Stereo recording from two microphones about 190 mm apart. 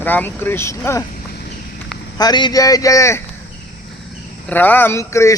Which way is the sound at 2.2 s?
20° left (ahead or behind).